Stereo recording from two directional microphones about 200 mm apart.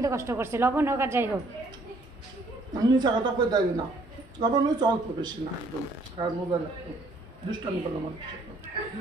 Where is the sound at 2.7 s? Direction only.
20° right (ahead or behind).